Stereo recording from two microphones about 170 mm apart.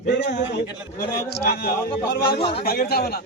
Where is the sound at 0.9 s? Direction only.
65° left (ahead or behind).